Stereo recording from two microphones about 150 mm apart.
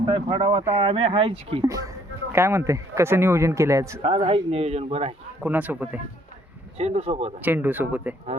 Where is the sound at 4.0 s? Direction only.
45° right (ahead or behind).